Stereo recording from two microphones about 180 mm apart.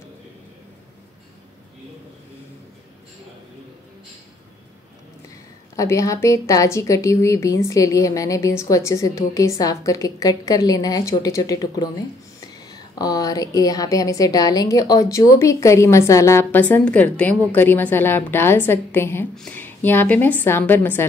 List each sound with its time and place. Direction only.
5.8 s a woman's voice: 15° left (ahead or behind)